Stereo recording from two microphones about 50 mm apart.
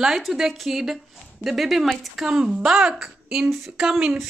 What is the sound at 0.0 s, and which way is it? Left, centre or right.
A woman's voice, centre.